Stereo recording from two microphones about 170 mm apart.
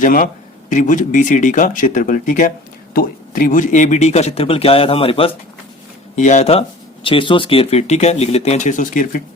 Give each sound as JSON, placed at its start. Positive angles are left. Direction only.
{"t": 0.0, "sound": "speech", "side_deg": 55}
{"t": 6.1, "sound": "speech", "side_deg": 45}